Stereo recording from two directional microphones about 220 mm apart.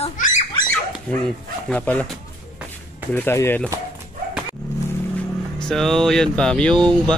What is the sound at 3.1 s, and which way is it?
Speech, 10° left (ahead or behind).